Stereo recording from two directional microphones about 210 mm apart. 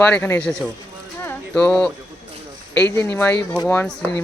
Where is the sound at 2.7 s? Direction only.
10° left (ahead or behind).